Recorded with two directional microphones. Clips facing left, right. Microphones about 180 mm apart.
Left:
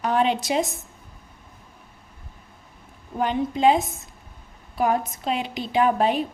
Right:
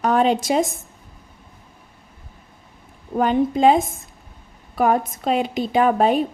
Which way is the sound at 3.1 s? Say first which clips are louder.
Right 6 dB; 45° right (ahead or behind).